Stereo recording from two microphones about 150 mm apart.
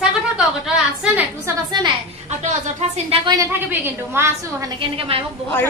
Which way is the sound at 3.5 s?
15° right (ahead or behind).